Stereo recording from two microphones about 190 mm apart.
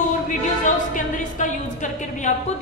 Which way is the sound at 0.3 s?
40° left (ahead or behind).